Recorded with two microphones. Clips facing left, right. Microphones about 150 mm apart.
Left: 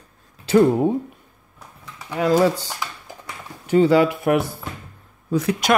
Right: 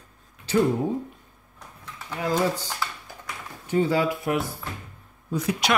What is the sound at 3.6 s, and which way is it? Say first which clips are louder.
Speech: left 7 dB; 85° left.